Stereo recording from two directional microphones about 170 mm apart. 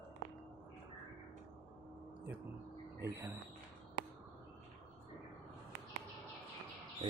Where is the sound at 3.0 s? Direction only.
15° right (ahead or behind).